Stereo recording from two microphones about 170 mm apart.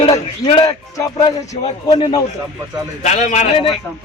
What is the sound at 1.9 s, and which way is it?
Speech, 25° left (ahead or behind).